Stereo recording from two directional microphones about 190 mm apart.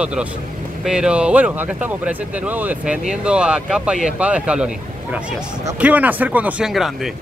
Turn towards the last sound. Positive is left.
turn(degrees=0)  # may be behind; listen again after turning